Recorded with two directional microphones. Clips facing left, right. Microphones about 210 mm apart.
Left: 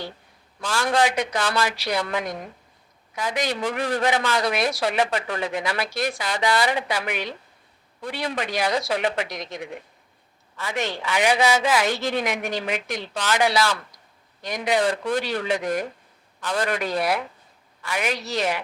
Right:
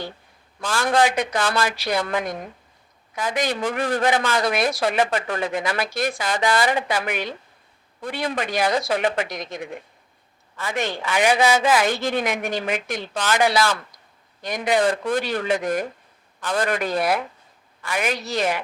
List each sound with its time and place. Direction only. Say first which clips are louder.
0.6 s a woman's voice: right 2 dB; 50° right (ahead or behind)